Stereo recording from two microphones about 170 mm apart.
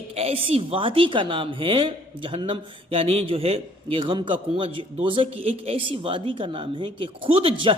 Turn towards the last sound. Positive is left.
turn(degrees=-30)  # may be behind; listen again after turning